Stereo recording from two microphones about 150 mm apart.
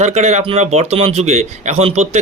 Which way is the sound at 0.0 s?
50° right (ahead or behind).